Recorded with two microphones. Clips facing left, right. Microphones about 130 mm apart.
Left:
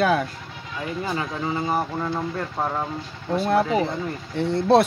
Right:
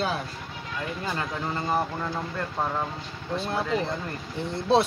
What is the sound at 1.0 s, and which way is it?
Speech, 10° left (ahead or behind).